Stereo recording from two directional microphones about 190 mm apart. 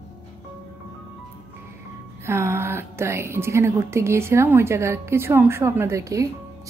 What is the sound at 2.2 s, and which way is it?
A woman's voice, 15° right (ahead or behind).